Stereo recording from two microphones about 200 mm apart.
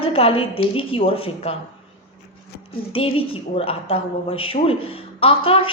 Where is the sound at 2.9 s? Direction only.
25° left (ahead or behind).